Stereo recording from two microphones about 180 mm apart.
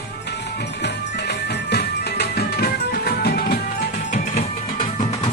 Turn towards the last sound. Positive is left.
turn(degrees=40)  # may be behind; listen again after turning